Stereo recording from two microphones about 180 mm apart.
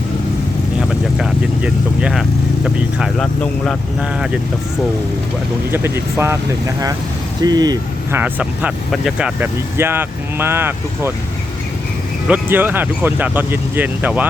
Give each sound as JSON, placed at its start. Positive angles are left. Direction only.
{"t": 0.9, "sound": "speech", "side_deg": -5}
{"t": 5.7, "sound": "speech", "side_deg": -15}
{"t": 8.2, "sound": "speech", "side_deg": -10}
{"t": 12.3, "sound": "speech", "side_deg": -10}